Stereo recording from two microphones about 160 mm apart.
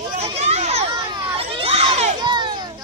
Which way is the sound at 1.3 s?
35° right (ahead or behind).